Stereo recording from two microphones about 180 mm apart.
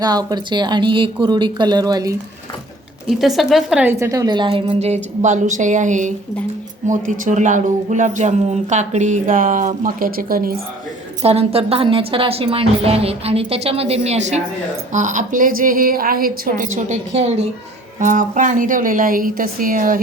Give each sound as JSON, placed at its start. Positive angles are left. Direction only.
{"t": 0.0, "sound": "speech", "side_deg": -20}
{"t": 3.1, "sound": "speech", "side_deg": 0}
{"t": 3.9, "sound": "speech", "side_deg": -15}
{"t": 11.2, "sound": "a woman's voice", "side_deg": -35}